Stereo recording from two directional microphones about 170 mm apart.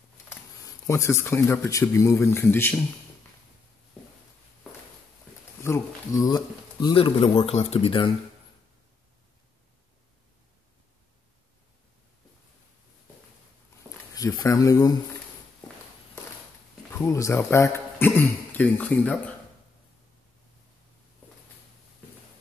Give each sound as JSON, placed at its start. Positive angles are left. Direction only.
{"t": 0.8, "sound": "speech", "side_deg": 15}
{"t": 5.6, "sound": "speech", "side_deg": 15}
{"t": 14.1, "sound": "speech", "side_deg": 20}
{"t": 16.9, "sound": "speech", "side_deg": 15}